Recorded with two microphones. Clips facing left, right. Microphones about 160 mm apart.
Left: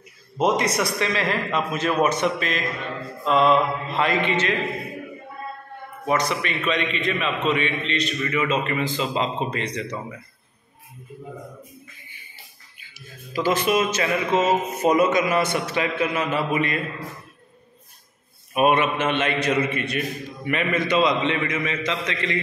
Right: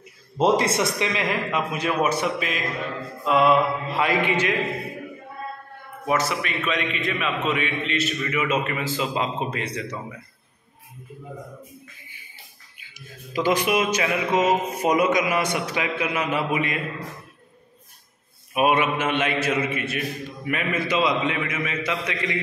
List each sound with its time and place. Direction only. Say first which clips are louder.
0.4 s a man's voice: right 1 dB; 30° right (ahead or behind); by 4.6 s 10° right (ahead or behind)
6.0 s a man's voice: left 1 dB; 5° right (ahead or behind)
12.7 s a man's voice: right 1 dB; 15° right (ahead or behind)
18.5 s a man's voice: left 1 dB; 5° right (ahead or behind)